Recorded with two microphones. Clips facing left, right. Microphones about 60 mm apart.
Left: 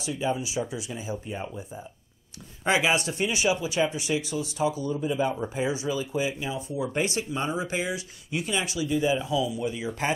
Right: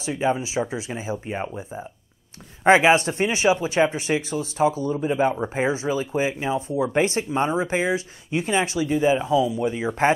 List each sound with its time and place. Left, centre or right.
0.0 s speech: right
1.2 s speech: right
1.6 s speech: right